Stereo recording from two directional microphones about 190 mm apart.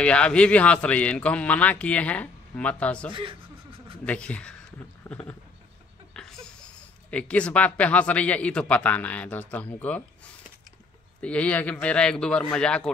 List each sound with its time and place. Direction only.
0.0 s a man's voice: 5° left (ahead or behind)
3.1 s speech: 25° right (ahead or behind)
4.0 s a man's voice: 5° left (ahead or behind)
5.1 s a sound: 15° left (ahead or behind)
7.1 s a man's voice: 5° left (ahead or behind)
11.1 s a man's voice: 5° left (ahead or behind)